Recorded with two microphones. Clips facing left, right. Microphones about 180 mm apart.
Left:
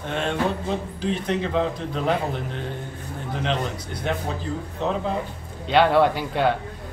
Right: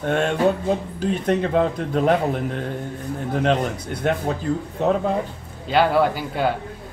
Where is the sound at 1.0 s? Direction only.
55° right (ahead or behind).